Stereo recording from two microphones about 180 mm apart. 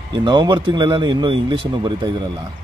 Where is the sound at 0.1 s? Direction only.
25° right (ahead or behind).